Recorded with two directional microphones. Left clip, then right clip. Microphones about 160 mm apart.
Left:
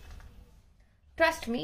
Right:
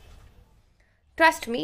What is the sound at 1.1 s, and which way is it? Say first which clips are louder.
Speech: right 6 dB; 25° right (ahead or behind).